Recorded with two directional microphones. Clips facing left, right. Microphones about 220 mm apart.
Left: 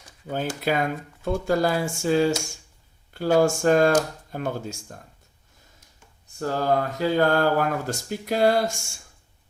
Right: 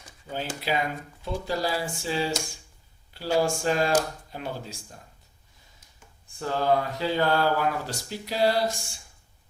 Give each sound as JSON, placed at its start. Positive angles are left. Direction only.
{"t": 0.3, "sound": "speech", "side_deg": 50}
{"t": 6.4, "sound": "speech", "side_deg": 45}